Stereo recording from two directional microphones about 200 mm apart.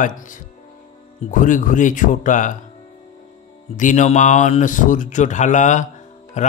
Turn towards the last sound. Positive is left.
turn(degrees=35)  # may be behind; listen again after turning